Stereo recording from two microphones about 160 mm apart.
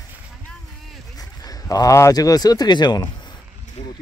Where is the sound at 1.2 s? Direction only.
25° left (ahead or behind).